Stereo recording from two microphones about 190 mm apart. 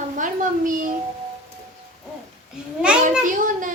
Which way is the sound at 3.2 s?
45° right (ahead or behind).